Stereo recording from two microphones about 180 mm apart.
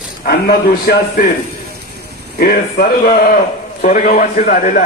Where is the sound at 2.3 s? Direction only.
55° left (ahead or behind).